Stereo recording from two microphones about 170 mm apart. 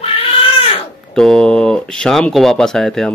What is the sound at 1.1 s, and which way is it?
Speech, 5° left (ahead or behind).